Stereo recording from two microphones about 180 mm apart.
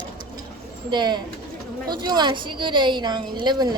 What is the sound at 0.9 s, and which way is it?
A woman's voice, 25° right (ahead or behind).